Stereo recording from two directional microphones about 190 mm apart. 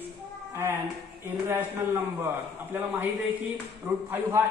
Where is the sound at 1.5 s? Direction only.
15° right (ahead or behind).